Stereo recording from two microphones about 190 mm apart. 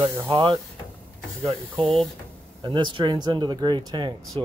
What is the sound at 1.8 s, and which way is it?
Speech, centre (ahead or behind).